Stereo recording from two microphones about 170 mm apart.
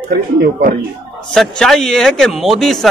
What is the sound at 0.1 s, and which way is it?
Speech, 65° right (ahead or behind).